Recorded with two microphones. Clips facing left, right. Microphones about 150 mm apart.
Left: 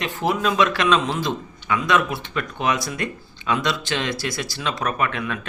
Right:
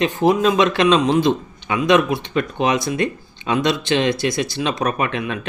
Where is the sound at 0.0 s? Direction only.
20° right (ahead or behind).